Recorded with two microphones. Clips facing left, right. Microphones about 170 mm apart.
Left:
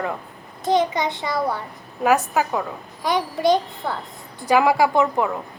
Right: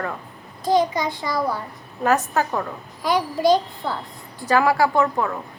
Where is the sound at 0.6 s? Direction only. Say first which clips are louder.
Even; 25° left (ahead or behind).